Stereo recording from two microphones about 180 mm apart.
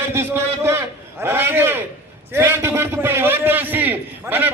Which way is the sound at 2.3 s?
15° right (ahead or behind).